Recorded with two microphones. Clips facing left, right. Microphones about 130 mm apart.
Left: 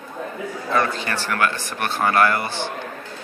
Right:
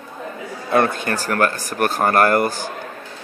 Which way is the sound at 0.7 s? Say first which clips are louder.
Right 4 dB; 55° right (ahead or behind).